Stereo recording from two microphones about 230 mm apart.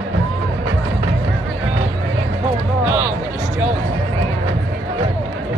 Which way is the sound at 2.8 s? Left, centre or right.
Centre.